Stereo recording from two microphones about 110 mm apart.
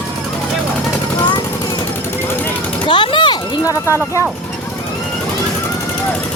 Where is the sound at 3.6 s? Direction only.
30° left (ahead or behind).